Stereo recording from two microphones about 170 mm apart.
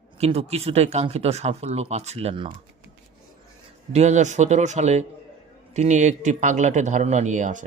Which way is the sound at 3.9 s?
40° right (ahead or behind).